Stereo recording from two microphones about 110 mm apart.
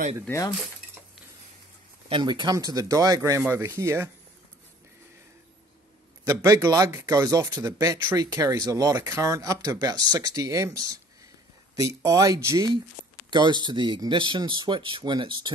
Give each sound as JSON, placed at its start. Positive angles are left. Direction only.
{"t": 2.0, "sound": "speech", "side_deg": -50}
{"t": 2.5, "sound": "speech", "side_deg": -35}
{"t": 6.2, "sound": "speech", "side_deg": -30}
{"t": 13.3, "sound": "speech", "side_deg": -45}